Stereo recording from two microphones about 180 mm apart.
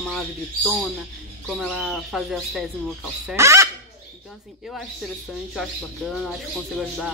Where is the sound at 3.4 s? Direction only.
15° right (ahead or behind).